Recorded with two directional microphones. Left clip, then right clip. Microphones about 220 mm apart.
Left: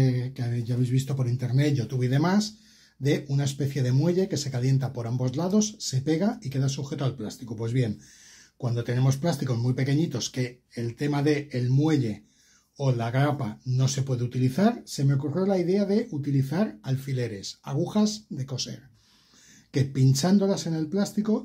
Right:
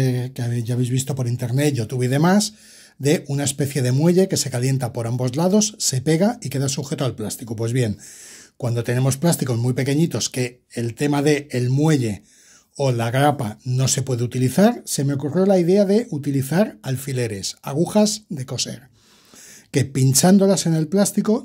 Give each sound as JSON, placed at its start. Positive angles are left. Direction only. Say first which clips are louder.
{"t": 0.0, "sound": "speech", "louder": "right 5 dB", "side_deg": -50}